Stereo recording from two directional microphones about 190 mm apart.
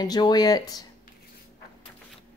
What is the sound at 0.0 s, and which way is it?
Speech, 20° left (ahead or behind).